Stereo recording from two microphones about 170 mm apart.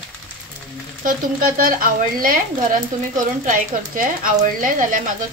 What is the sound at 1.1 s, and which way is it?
Speech, 55° right (ahead or behind).